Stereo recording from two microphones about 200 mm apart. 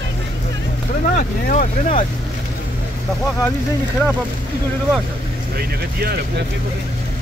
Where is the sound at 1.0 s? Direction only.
40° left (ahead or behind).